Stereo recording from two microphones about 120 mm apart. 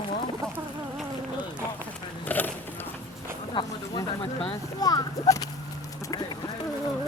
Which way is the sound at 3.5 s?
40° left (ahead or behind).